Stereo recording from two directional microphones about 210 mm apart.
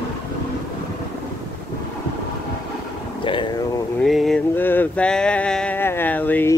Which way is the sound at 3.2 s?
25° left (ahead or behind).